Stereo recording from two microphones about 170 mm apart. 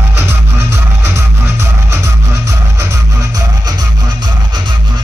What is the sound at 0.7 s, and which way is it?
Music, 15° right (ahead or behind).